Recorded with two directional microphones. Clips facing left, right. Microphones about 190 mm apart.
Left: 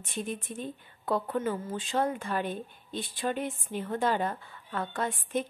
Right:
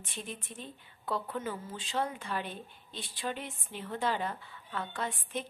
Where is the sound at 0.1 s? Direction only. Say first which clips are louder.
Left 8 dB; 50° left (ahead or behind).